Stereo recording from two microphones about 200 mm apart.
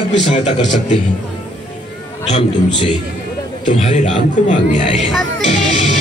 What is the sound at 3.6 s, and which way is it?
A man's voice, 30° left (ahead or behind).